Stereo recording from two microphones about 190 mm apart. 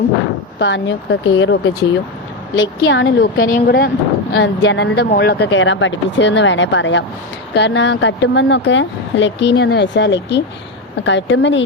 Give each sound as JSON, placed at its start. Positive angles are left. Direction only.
{"t": 0.6, "sound": "a woman's voice", "side_deg": 75}
{"t": 3.5, "sound": "speech", "side_deg": 60}